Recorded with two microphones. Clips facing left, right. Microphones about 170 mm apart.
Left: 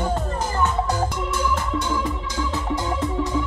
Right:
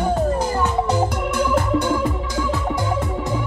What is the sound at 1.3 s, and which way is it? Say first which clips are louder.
Organ: right 5 dB; 55° right (ahead or behind).